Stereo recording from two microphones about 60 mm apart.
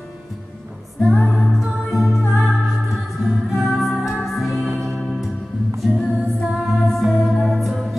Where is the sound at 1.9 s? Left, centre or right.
Centre.